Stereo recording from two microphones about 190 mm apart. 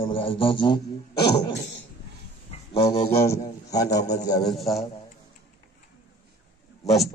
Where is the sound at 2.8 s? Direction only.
15° left (ahead or behind).